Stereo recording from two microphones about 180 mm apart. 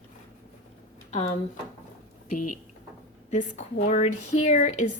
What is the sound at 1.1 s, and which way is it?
Speech, 35° left (ahead or behind).